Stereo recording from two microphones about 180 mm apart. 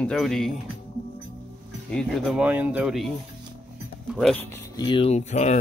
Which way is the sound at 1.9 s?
Centre (ahead or behind).